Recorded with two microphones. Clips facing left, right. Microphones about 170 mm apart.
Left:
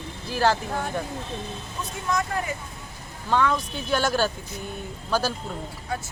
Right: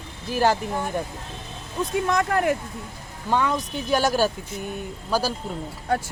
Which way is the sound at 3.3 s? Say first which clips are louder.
Even; 15° right (ahead or behind).